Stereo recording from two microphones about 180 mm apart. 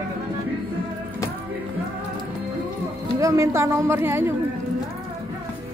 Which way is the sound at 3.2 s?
15° right (ahead or behind).